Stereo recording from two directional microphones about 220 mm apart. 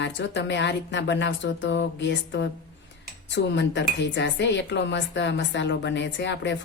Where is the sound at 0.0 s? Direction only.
55° left (ahead or behind).